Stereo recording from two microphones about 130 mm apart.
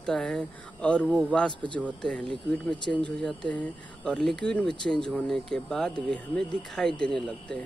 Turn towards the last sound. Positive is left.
turn(degrees=5)  # may be behind; listen again after turning